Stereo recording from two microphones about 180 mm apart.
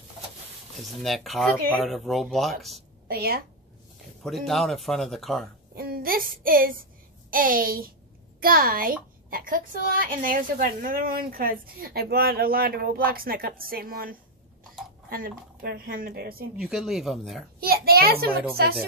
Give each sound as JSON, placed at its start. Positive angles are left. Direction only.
{"t": 1.0, "sound": "speech", "side_deg": 0}
{"t": 3.1, "sound": "a woman's voice", "side_deg": -55}
{"t": 4.5, "sound": "speech", "side_deg": 0}
{"t": 5.8, "sound": "a woman's voice", "side_deg": -55}
{"t": 16.5, "sound": "speech", "side_deg": 0}
{"t": 17.6, "sound": "a woman's voice", "side_deg": -55}